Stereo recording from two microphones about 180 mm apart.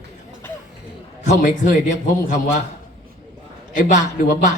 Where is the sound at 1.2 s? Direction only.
45° left (ahead or behind).